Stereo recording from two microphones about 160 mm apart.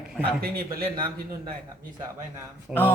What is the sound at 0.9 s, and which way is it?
Speech, 30° right (ahead or behind).